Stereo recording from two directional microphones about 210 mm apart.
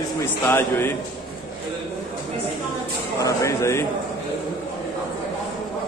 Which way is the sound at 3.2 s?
15° left (ahead or behind).